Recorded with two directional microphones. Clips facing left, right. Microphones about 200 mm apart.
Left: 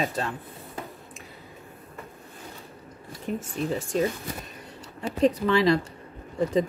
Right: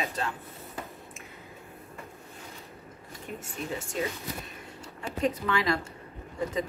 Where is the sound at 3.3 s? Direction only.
40° left (ahead or behind).